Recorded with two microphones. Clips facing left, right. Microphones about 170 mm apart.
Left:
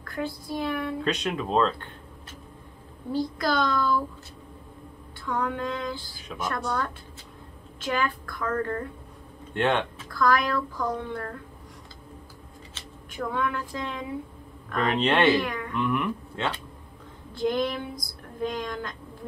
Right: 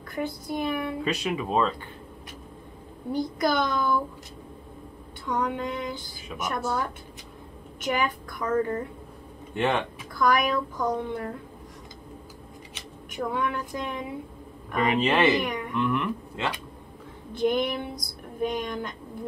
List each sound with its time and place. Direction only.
0.0 s speech: 20° right (ahead or behind)
3.1 s a child's voice: 20° right (ahead or behind)
5.2 s a child's voice: 20° right (ahead or behind)
6.6 s speech: 5° right (ahead or behind)
7.8 s speech: 15° right (ahead or behind)
9.5 s speech: 5° right (ahead or behind)
10.0 s speech: 20° right (ahead or behind)
12.7 s speech: 15° right (ahead or behind)
14.7 s speech: 5° right (ahead or behind)
15.3 s a child's voice: 20° right (ahead or behind)
15.7 s a sound: centre (ahead or behind)
17.3 s a child's voice: 20° right (ahead or behind)